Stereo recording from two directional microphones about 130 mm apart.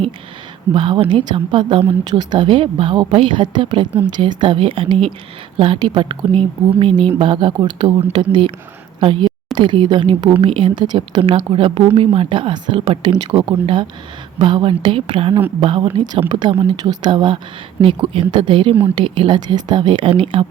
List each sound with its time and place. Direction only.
0.7 s speech: 40° right (ahead or behind)